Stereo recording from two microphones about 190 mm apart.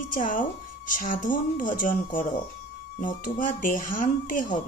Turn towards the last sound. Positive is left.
turn(degrees=45)  # may be behind; listen again after turning